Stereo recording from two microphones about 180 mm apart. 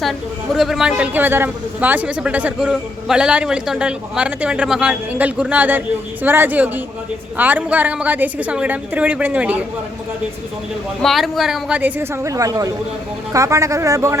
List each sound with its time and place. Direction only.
0.0 s a man's voice: centre (ahead or behind)
11.0 s a woman's voice: centre (ahead or behind); by 14.2 s 15° right (ahead or behind)